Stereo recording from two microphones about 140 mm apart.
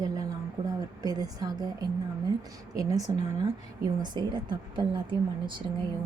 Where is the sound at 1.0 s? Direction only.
25° right (ahead or behind).